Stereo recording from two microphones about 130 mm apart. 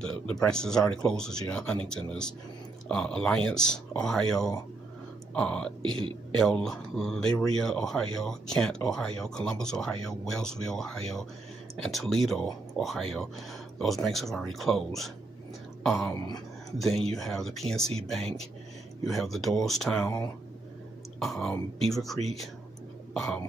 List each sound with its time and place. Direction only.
0.5 s speech: 5° left (ahead or behind)
5.8 s speech: 40° right (ahead or behind)
6.3 s speech: 5° left (ahead or behind)
21.2 s speech: centre (ahead or behind)